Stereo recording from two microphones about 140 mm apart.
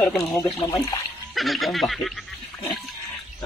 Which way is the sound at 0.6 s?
20° left (ahead or behind).